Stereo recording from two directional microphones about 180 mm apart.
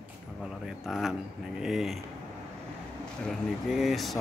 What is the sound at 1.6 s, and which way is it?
Speech, centre (ahead or behind).